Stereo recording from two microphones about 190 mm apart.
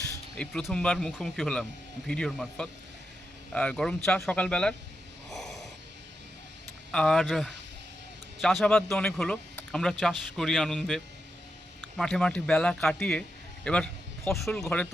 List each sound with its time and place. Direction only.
0.3 s speech: 5° left (ahead or behind)
5.3 s snort: centre (ahead or behind)
6.9 s speech: 5° left (ahead or behind)
14.3 s speech: 10° left (ahead or behind)